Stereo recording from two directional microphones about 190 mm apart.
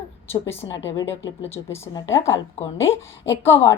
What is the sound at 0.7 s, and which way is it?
Speech, 70° left (ahead or behind).